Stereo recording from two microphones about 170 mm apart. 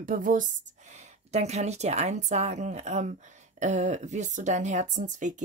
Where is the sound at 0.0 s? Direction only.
55° right (ahead or behind).